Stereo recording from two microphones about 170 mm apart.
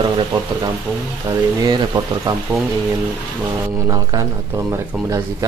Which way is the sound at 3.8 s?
20° right (ahead or behind).